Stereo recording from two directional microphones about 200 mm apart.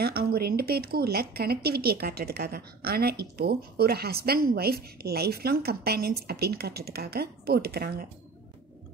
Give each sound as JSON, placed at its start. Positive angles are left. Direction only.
{"t": 0.0, "sound": "speech", "side_deg": -50}